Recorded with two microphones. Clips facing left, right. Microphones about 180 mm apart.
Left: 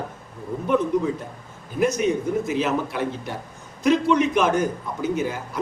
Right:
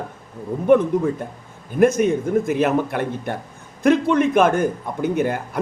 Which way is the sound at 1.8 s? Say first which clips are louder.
Right 5 dB; 50° right (ahead or behind).